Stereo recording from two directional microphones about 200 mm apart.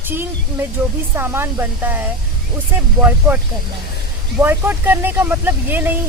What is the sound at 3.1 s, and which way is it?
Speech, 10° right (ahead or behind).